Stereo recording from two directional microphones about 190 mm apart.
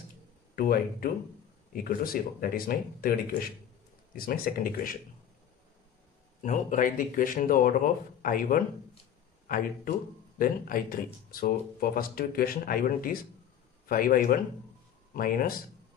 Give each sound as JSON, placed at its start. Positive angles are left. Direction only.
{"t": 0.6, "sound": "speech", "side_deg": 50}
{"t": 6.4, "sound": "speech", "side_deg": 40}